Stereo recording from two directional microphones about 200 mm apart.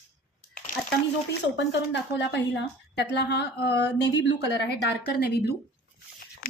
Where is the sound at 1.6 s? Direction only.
60° left (ahead or behind).